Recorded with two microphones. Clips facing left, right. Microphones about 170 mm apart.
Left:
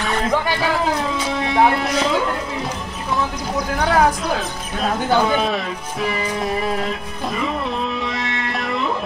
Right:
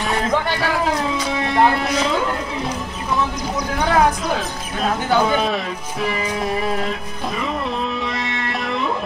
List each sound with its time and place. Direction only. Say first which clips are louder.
0.0 s music: even; centre (ahead or behind)
3.8 s speech: even; centre (ahead or behind)
8.0 s music: even; centre (ahead or behind)